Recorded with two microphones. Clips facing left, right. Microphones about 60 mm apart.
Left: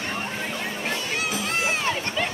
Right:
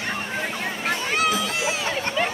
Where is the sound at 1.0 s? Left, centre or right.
Right.